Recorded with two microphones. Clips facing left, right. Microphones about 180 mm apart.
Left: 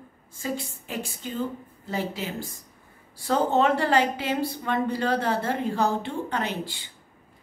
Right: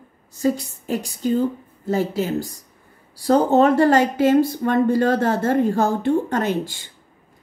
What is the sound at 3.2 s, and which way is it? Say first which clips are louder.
Speech: right 7 dB; 40° right (ahead or behind).